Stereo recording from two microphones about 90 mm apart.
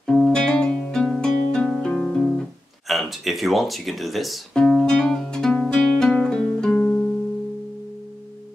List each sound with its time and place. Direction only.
0.0 s music: 5° left (ahead or behind)
2.9 s speech: centre (ahead or behind)
4.9 s music: 10° left (ahead or behind)
6.8 s music: 20° left (ahead or behind)